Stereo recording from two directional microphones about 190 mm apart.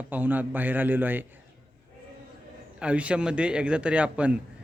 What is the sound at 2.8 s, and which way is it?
A man's voice, 5° right (ahead or behind).